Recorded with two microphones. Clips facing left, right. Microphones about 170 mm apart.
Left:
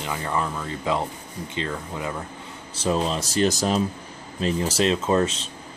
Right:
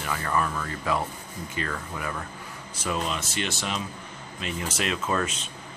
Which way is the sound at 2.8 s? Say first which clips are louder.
Left 6 dB; 30° left (ahead or behind).